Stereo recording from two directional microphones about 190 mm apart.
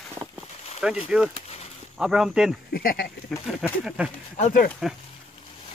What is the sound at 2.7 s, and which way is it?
Speech, 55° left (ahead or behind).